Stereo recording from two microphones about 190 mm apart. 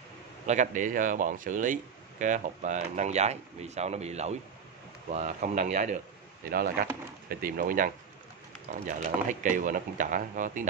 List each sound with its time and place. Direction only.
0.5 s speech: 40° right (ahead or behind)
6.4 s speech: 50° right (ahead or behind)